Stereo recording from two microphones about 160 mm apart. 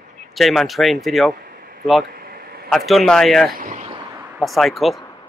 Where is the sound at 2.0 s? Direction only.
65° right (ahead or behind).